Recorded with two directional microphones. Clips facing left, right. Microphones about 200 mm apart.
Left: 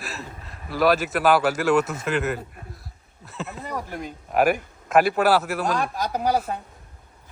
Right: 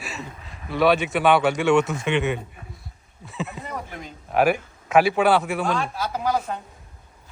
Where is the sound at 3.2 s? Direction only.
Centre (ahead or behind).